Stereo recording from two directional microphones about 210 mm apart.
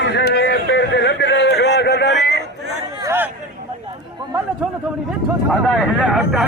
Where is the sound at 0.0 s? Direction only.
55° left (ahead or behind).